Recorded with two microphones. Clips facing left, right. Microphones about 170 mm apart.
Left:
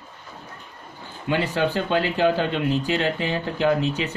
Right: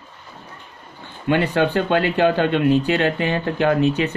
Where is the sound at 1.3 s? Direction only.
60° right (ahead or behind).